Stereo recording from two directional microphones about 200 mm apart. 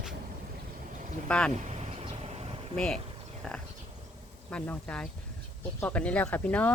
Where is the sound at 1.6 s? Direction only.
35° right (ahead or behind).